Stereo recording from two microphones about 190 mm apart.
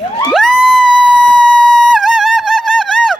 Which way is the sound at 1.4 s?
Centre (ahead or behind).